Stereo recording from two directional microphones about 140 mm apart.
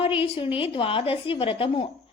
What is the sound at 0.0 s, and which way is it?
A woman's voice, 40° left (ahead or behind).